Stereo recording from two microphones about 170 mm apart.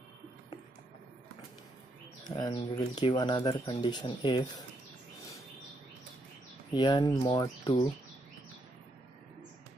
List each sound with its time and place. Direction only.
2.2 s speech: 25° left (ahead or behind)
6.7 s speech: 25° left (ahead or behind)